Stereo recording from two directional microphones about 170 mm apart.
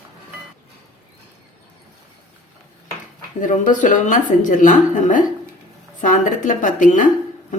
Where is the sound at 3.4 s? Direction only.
50° left (ahead or behind).